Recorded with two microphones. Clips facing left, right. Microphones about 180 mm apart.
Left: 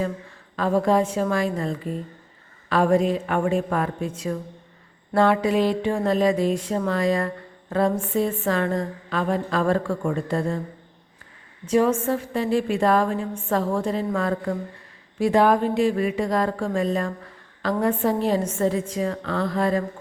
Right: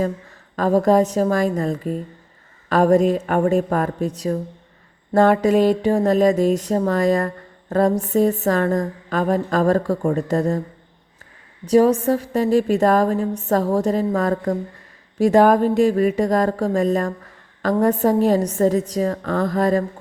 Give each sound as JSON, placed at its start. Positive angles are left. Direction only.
{"t": 0.5, "sound": "a woman's voice", "side_deg": -45}
{"t": 11.6, "sound": "a woman's voice", "side_deg": -35}